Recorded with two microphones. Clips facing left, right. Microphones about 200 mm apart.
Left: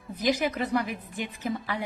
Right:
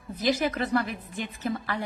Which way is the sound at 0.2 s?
15° left (ahead or behind).